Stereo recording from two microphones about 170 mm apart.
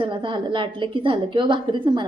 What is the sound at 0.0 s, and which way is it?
A woman's voice, 30° right (ahead or behind).